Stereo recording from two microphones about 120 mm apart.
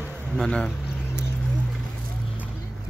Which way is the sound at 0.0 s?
5° left (ahead or behind).